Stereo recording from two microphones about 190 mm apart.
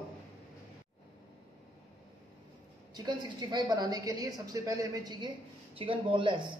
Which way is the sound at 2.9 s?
20° right (ahead or behind).